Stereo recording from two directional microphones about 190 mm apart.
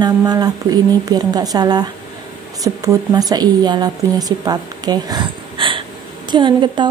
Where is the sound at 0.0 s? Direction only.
20° right (ahead or behind).